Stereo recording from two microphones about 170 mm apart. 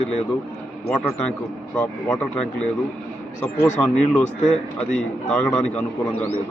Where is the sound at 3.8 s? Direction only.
5° left (ahead or behind).